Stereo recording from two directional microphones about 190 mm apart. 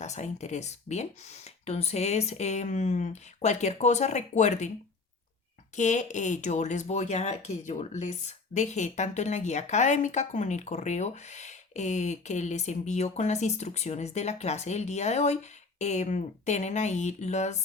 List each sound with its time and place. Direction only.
0.0 s speech: 35° left (ahead or behind)
5.7 s speech: 40° left (ahead or behind)